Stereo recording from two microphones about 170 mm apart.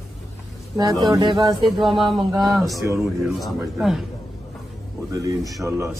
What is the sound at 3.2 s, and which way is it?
Speech, centre (ahead or behind).